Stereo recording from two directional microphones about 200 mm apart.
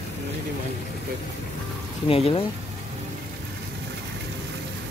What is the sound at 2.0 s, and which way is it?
Speech, 30° left (ahead or behind).